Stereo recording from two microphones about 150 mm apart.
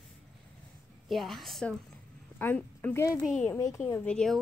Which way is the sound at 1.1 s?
Centre (ahead or behind).